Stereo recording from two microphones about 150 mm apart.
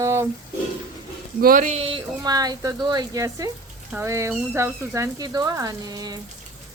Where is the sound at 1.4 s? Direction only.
70° right (ahead or behind).